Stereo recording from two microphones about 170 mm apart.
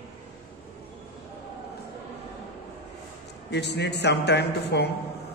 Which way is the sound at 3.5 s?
90° left.